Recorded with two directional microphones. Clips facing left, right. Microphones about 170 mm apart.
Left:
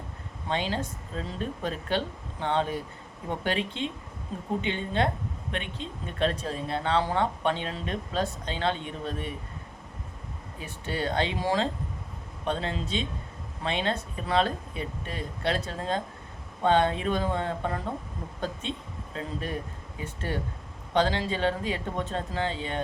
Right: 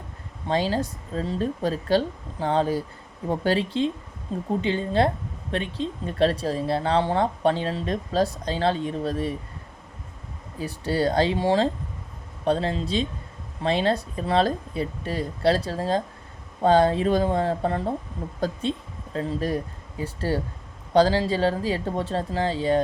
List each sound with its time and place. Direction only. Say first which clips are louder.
0.4 s speech: right 6 dB; 35° right (ahead or behind)
10.6 s speech: right 8 dB; 35° right (ahead or behind)